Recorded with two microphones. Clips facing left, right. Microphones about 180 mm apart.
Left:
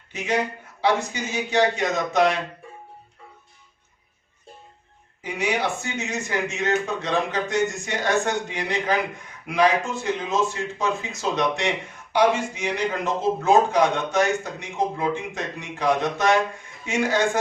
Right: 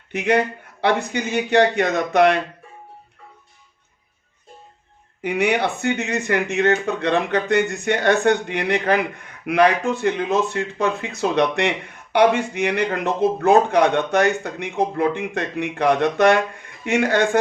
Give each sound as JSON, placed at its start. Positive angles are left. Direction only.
{"t": 0.8, "sound": "speech", "side_deg": -60}
{"t": 5.2, "sound": "speech", "side_deg": -60}